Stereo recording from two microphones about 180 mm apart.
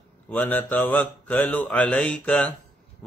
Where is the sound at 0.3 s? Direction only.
10° left (ahead or behind).